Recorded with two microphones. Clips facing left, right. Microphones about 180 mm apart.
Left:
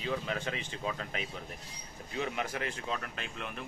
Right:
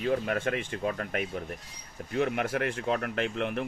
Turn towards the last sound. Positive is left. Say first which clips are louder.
# right 12 dB
turn(degrees=-70)  # may be behind; listen again after turning